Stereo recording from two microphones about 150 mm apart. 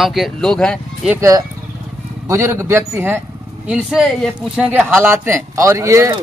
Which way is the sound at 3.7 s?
5° right (ahead or behind).